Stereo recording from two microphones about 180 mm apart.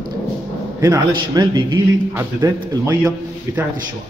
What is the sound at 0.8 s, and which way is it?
A man's voice, 20° right (ahead or behind).